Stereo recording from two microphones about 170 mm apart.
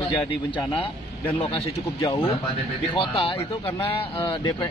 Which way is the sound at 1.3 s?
35° left (ahead or behind).